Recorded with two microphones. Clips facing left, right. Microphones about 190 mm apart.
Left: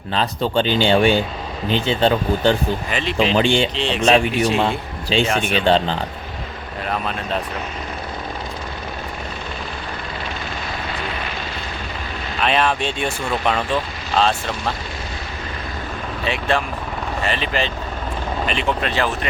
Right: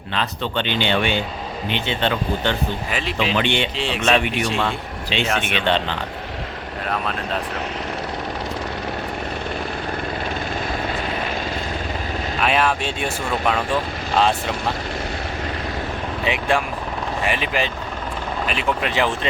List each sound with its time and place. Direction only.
0.1 s a man's voice: 35° left (ahead or behind)
2.9 s speech: 5° right (ahead or behind)
3.3 s a man's voice: 35° left (ahead or behind)
3.8 s speech: 5° right (ahead or behind)
4.0 s a man's voice: 35° left (ahead or behind)
12.4 s speech: 5° right (ahead or behind)
14.2 s speech: 15° right (ahead or behind)
16.2 s speech: 15° right (ahead or behind)